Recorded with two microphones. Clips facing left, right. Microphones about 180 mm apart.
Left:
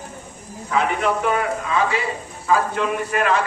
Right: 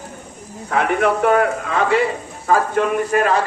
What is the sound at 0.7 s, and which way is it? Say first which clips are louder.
A man's voice: right 3 dB; 60° right (ahead or behind).